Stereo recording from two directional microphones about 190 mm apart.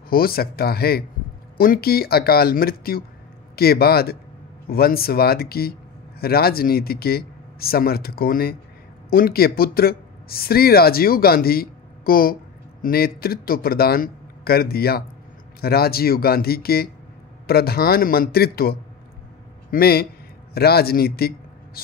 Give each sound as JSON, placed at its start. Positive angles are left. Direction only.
{"t": 0.1, "sound": "speech", "side_deg": 50}